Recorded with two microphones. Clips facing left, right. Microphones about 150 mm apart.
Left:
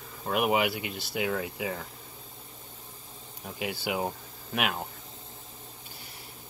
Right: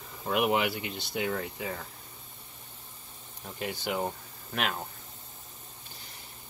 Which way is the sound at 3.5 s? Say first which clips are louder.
Left 1 dB; 5° left (ahead or behind).